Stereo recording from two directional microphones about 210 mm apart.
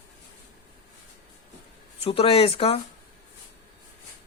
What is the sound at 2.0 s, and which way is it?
Speech, 25° left (ahead or behind).